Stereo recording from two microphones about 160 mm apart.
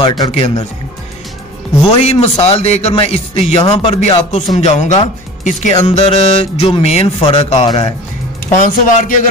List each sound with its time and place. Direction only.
0.0 s speech: 25° left (ahead or behind)
0.3 s speech: 40° left (ahead or behind)
2.0 s speech: 40° left (ahead or behind)
8.5 s speech: 50° left (ahead or behind)